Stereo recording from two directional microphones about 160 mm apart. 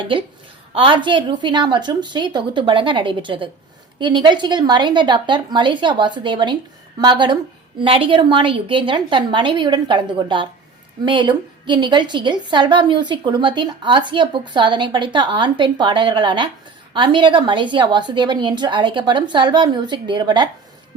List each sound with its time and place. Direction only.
0.7 s a woman's voice: 30° right (ahead or behind)